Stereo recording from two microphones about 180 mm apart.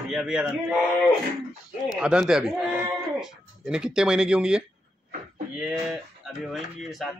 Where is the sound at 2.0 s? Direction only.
5° right (ahead or behind).